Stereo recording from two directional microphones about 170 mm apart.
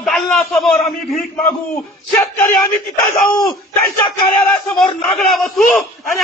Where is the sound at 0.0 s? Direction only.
5° left (ahead or behind).